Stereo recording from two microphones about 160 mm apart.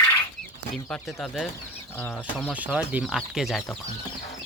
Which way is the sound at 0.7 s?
5° left (ahead or behind).